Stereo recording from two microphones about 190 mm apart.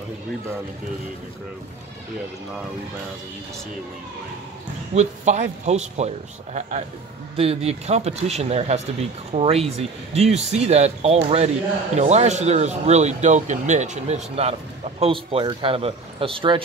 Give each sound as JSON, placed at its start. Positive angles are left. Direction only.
{"t": 4.9, "sound": "speech", "side_deg": -35}